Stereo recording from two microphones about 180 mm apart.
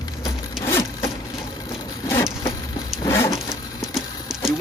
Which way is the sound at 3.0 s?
15° left (ahead or behind).